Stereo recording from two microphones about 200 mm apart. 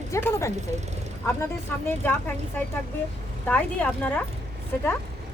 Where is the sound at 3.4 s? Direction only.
5° left (ahead or behind).